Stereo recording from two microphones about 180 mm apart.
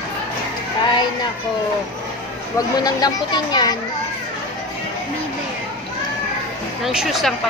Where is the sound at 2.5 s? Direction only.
20° left (ahead or behind).